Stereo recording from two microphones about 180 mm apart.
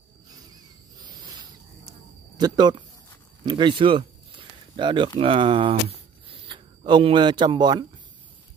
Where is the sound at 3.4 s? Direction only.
25° right (ahead or behind).